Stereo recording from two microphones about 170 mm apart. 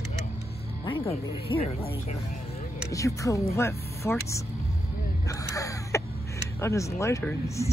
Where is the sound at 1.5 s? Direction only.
30° left (ahead or behind).